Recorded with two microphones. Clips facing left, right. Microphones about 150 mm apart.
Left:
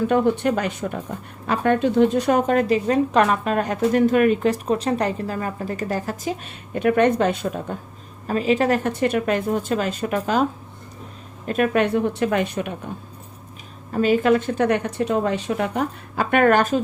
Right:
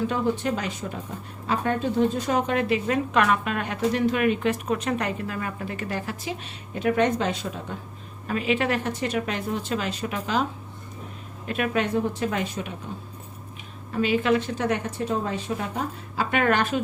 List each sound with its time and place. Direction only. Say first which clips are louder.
0.1 s a woman's voice: left 6 dB; 55° left (ahead or behind)
2.5 s a woman's voice: left 5 dB; 40° left (ahead or behind)
8.3 s a woman's voice: left 5 dB; 35° left (ahead or behind)
8.9 s speech: left 6 dB; 55° left (ahead or behind)
11.4 s a woman's voice: left 6 dB; 45° left (ahead or behind); by 12.7 s 60° left (ahead or behind)
13.9 s a woman's voice: left 5 dB; 45° left (ahead or behind)